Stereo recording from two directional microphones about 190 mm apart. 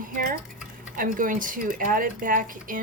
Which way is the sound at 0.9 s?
45° right (ahead or behind).